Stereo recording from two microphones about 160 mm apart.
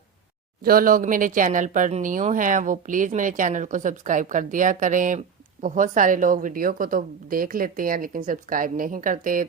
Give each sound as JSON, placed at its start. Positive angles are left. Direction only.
{"t": 0.6, "sound": "a woman's voice", "side_deg": -65}